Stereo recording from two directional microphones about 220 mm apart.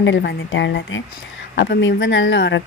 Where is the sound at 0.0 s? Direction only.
55° left (ahead or behind).